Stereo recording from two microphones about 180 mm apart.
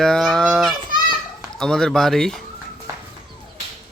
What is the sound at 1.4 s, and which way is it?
Speech, 5° left (ahead or behind).